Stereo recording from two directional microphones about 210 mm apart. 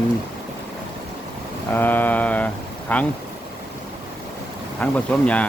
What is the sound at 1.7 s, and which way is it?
Speech, 10° left (ahead or behind).